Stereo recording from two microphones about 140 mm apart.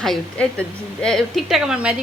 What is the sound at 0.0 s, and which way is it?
A woman's voice, 5° left (ahead or behind).